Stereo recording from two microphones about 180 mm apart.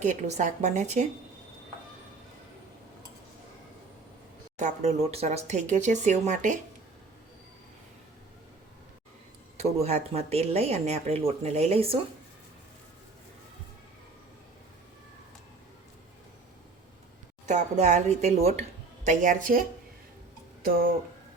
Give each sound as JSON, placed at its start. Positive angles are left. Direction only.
{"t": 0.0, "sound": "a woman's voice", "side_deg": -40}
{"t": 4.6, "sound": "speech", "side_deg": -40}
{"t": 9.6, "sound": "speech", "side_deg": -35}
{"t": 17.5, "sound": "a woman's voice", "side_deg": -40}